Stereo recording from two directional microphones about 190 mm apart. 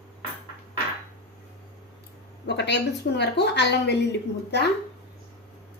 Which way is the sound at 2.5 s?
65° left (ahead or behind).